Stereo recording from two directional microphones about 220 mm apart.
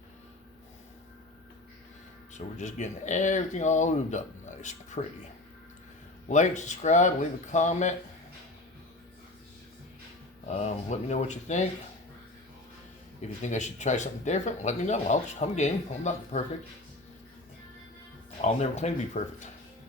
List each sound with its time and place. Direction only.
2.3 s speech: 35° left (ahead or behind)
6.2 s speech: 35° left (ahead or behind)
10.5 s speech: 30° left (ahead or behind)
13.4 s speech: 30° left (ahead or behind)
18.4 s speech: 30° left (ahead or behind)